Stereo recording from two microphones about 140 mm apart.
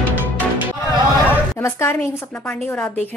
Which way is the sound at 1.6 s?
20° left (ahead or behind).